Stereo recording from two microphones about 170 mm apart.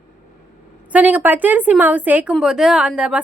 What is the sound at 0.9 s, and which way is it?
A woman's voice, 10° right (ahead or behind).